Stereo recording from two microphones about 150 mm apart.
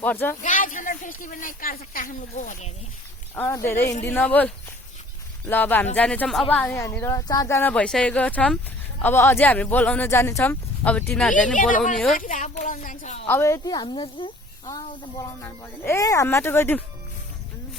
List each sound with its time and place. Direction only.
0.0 s speech: 10° left (ahead or behind)
0.4 s speech: 60° left (ahead or behind)
3.3 s speech: 15° left (ahead or behind)
11.5 s speech: 60° left (ahead or behind)
13.2 s speech: 15° left (ahead or behind); by 14.3 s 35° left (ahead or behind)
15.4 s speech: 15° left (ahead or behind)